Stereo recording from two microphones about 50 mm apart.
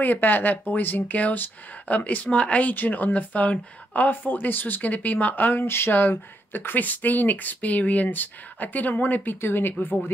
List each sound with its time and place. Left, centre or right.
0.0 s speech: left
2.7 s speech: left